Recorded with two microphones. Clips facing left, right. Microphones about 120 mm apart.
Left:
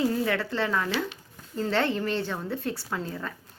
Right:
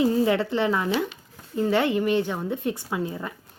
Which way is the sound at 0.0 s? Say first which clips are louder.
Right 5 dB; 20° right (ahead or behind).